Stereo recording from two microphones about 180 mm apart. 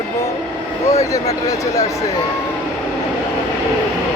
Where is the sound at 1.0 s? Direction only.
20° left (ahead or behind).